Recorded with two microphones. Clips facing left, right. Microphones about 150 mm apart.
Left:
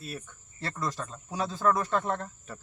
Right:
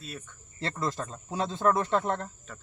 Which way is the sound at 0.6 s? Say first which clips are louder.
Right 2 dB; 25° right (ahead or behind).